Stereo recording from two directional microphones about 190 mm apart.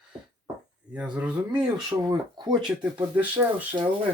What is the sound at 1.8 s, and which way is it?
Speech, 20° right (ahead or behind).